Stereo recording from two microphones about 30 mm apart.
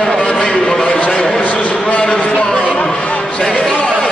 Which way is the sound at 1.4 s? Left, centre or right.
Left.